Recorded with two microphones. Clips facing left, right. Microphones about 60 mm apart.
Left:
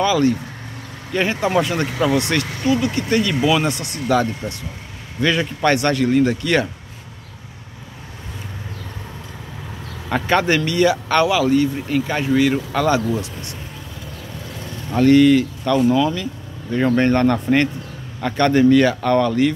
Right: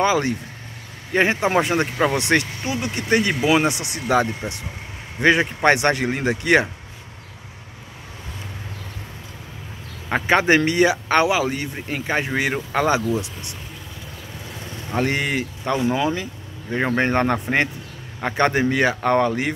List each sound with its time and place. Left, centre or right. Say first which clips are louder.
0.0 s speech: left 3 dB; right
2.1 s speech: even; right
10.0 s speech: even; right
15.0 s speech: left 10 dB; right